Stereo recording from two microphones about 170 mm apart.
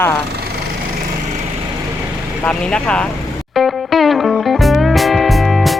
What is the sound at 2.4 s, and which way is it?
Speech, 5° left (ahead or behind).